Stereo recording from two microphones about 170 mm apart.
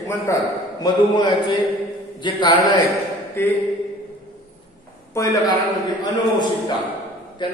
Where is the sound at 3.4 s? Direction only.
15° left (ahead or behind).